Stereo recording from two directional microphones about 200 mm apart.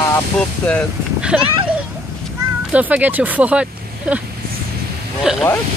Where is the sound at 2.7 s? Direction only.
5° right (ahead or behind).